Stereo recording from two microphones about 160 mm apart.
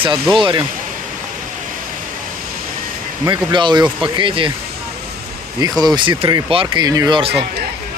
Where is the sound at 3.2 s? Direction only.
30° right (ahead or behind).